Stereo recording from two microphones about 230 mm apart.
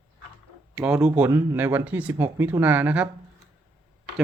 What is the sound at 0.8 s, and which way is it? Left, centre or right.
Speech, centre.